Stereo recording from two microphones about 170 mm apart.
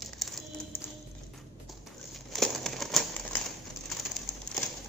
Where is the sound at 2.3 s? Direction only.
Centre (ahead or behind).